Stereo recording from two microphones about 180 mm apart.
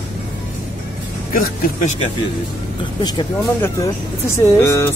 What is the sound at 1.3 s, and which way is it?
Speech, 50° left (ahead or behind).